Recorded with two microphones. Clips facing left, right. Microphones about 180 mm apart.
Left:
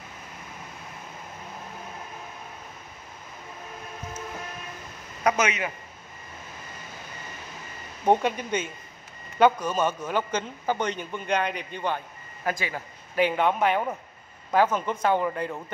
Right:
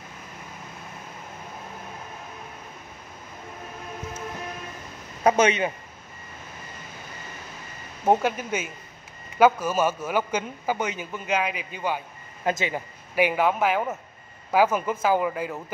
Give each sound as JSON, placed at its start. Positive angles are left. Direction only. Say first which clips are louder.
{"t": 5.2, "sound": "speech", "louder": "right 5 dB", "side_deg": -30}
{"t": 8.0, "sound": "a man's voice", "louder": "right 1 dB", "side_deg": -5}
{"t": 12.4, "sound": "speech", "louder": "right 4 dB", "side_deg": -20}
{"t": 13.1, "sound": "speech", "louder": "right 1 dB", "side_deg": -10}